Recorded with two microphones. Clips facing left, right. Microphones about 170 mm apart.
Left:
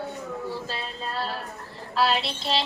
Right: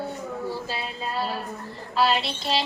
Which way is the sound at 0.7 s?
5° right (ahead or behind).